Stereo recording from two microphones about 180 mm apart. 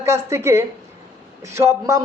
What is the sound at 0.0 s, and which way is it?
A man's voice, 15° right (ahead or behind).